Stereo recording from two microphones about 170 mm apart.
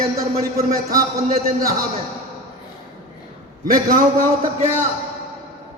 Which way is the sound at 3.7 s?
55° right (ahead or behind).